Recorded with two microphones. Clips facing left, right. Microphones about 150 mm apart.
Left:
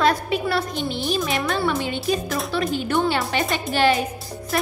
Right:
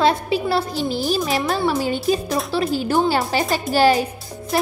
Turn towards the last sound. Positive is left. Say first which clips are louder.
# right 3 dB
turn(degrees=-30)  # may be behind; listen again after turning